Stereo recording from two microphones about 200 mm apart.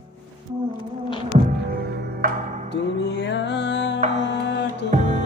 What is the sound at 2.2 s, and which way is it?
Music, 45° right (ahead or behind).